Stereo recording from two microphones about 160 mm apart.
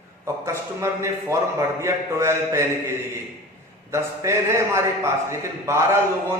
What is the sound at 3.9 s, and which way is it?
A man's voice, 15° right (ahead or behind).